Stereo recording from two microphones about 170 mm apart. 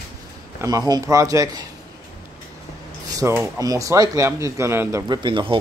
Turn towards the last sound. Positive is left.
turn(degrees=-30)  # may be behind; listen again after turning